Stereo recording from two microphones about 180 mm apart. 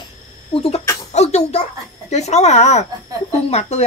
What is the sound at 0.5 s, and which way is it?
Speech, 30° left (ahead or behind).